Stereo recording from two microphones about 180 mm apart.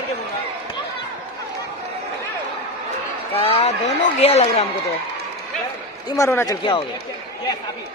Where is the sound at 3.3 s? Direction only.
30° left (ahead or behind).